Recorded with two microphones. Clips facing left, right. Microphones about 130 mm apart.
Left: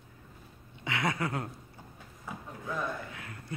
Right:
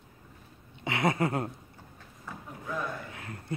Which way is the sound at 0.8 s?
25° right (ahead or behind).